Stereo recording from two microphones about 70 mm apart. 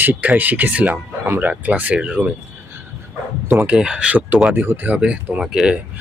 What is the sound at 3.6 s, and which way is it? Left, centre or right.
Speech, centre.